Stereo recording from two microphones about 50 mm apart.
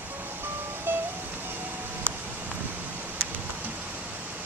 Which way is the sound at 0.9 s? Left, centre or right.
Right.